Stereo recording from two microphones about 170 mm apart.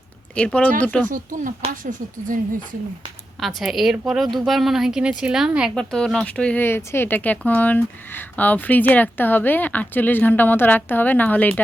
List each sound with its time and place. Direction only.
0.3 s speech: 5° left (ahead or behind)
1.0 s speech: 55° right (ahead or behind)
3.4 s speech: centre (ahead or behind)